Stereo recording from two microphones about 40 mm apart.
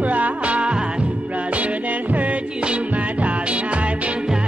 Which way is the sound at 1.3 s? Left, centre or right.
Right.